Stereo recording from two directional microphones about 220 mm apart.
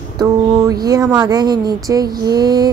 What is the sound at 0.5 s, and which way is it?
Speech, 15° right (ahead or behind).